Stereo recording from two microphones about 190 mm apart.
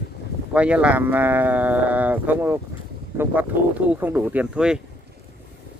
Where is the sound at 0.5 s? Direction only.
5° right (ahead or behind).